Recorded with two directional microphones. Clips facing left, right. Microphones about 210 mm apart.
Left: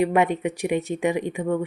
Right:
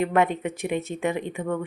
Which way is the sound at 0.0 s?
15° left (ahead or behind).